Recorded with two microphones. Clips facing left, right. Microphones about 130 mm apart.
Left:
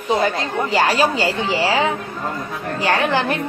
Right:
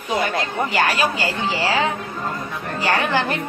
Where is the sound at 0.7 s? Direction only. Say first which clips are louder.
Left 4 dB; 30° left (ahead or behind).